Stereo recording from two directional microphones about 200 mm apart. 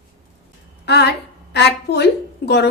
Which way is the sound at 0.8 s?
55° left (ahead or behind).